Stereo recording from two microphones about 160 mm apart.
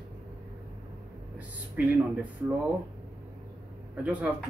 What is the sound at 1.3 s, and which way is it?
Speech, 10° right (ahead or behind).